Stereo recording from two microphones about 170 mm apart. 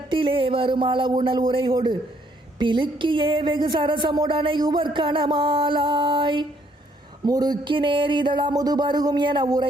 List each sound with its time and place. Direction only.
0.1 s speech: 30° right (ahead or behind)